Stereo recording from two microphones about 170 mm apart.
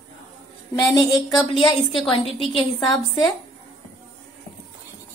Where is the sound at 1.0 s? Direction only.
25° left (ahead or behind).